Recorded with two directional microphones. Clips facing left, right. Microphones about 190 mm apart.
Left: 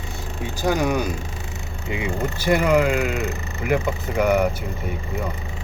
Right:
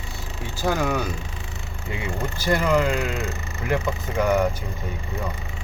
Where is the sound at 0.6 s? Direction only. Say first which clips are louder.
Left 2 dB; 15° left (ahead or behind).